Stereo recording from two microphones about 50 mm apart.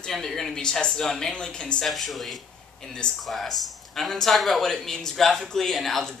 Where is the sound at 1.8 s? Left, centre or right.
Centre.